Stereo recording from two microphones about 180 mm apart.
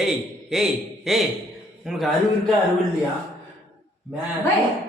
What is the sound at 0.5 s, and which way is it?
Speech, centre (ahead or behind).